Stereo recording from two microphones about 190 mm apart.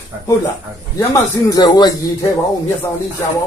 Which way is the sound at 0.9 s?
15° left (ahead or behind).